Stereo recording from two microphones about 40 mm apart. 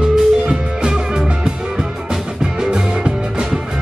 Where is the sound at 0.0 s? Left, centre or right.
Right.